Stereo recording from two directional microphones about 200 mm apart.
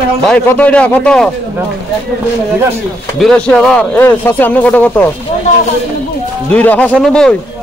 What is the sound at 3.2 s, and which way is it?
Speech, 5° left (ahead or behind).